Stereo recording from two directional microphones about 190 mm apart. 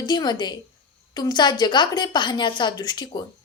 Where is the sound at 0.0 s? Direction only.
20° left (ahead or behind).